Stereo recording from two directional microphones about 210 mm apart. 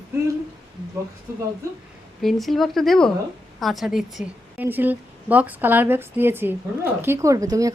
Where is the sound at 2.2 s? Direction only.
Centre (ahead or behind).